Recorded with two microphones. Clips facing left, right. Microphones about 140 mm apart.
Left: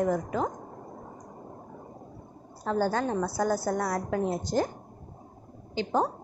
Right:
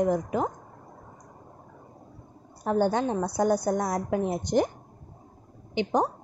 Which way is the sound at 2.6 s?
20° right (ahead or behind).